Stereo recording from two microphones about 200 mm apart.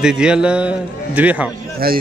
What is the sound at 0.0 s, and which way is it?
A man's voice, 5° right (ahead or behind).